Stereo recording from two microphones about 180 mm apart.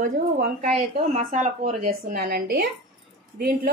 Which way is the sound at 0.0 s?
50° right (ahead or behind).